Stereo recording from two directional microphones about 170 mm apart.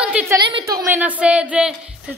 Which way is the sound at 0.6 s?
20° right (ahead or behind).